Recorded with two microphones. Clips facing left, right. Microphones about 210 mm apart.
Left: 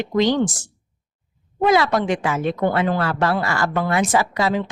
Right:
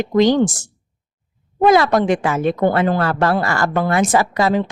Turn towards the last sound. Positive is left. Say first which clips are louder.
# right 4 dB
turn(degrees=-45)  # may be behind; listen again after turning